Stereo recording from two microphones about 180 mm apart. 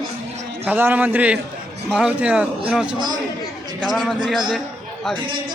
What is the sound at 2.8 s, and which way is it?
Speech, 25° right (ahead or behind).